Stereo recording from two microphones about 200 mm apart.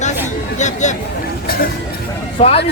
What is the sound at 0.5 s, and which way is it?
Speech, 35° left (ahead or behind).